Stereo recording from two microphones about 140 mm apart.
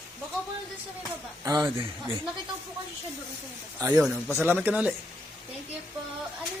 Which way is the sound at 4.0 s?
Centre (ahead or behind).